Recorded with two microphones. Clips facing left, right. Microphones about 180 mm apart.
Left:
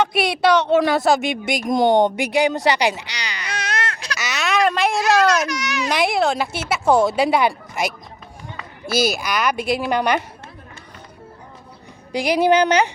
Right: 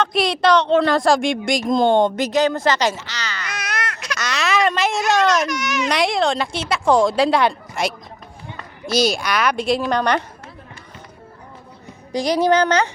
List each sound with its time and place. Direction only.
0.0 s speech: 5° left (ahead or behind)
3.5 s baby cry: 25° left (ahead or behind)
4.2 s a sound: 5° left (ahead or behind)
5.9 s a woman's voice: 5° left (ahead or behind)
12.1 s speech: 10° left (ahead or behind)